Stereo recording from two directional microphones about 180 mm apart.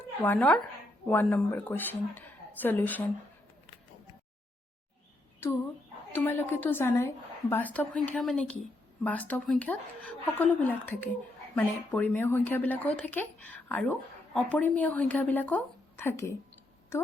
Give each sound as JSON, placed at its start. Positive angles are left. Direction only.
{"t": 0.2, "sound": "speech", "side_deg": 10}
{"t": 6.1, "sound": "speech", "side_deg": 10}